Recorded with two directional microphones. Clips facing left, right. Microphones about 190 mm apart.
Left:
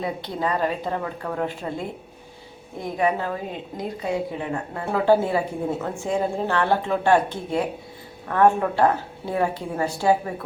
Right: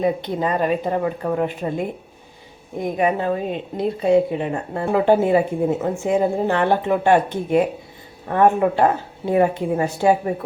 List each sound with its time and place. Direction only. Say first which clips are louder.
0.0 s a woman's voice: right 6 dB; 20° right (ahead or behind)